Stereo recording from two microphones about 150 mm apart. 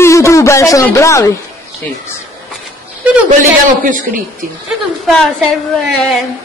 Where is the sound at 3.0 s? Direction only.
10° right (ahead or behind).